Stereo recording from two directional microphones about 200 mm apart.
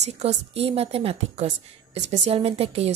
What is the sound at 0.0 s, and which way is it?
Speech, 35° right (ahead or behind).